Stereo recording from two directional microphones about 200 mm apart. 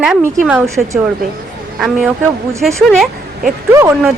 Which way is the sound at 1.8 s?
Centre (ahead or behind).